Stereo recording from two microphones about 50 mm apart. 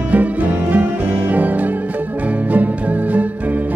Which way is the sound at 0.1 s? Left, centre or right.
Right.